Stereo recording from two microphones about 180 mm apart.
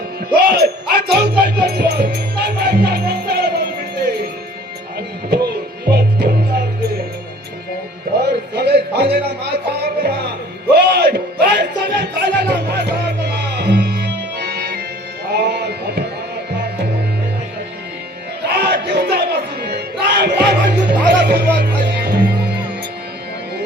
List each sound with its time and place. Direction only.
0.3 s music: 60° right (ahead or behind)
5.9 s music: 65° right (ahead or behind)
8.2 s music: 65° right (ahead or behind)
18.4 s music: 65° right (ahead or behind)